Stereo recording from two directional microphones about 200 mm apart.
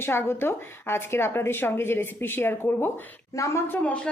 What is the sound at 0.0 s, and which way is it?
A woman's voice, 10° left (ahead or behind).